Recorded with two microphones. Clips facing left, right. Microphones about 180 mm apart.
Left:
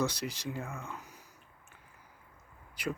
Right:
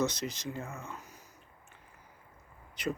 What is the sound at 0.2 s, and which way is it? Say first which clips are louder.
Speech: right 1 dB; 15° left (ahead or behind).